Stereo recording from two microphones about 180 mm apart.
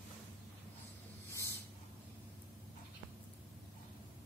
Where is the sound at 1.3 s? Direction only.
15° left (ahead or behind).